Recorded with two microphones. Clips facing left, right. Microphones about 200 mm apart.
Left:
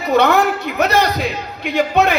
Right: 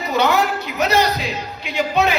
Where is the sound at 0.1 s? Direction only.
55° left (ahead or behind).